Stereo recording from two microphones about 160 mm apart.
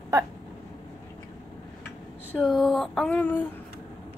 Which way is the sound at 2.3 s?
5° left (ahead or behind).